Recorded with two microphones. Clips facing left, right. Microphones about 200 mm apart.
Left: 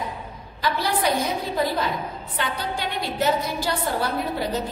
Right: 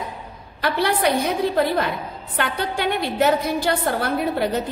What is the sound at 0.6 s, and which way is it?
A woman's voice, 60° right (ahead or behind).